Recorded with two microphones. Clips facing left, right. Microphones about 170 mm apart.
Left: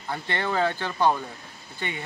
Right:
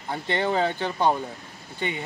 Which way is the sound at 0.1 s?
20° right (ahead or behind).